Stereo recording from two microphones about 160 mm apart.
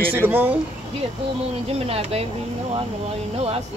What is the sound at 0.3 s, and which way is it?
Speech, 10° right (ahead or behind).